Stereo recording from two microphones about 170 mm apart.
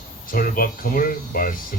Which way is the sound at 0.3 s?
55° left (ahead or behind).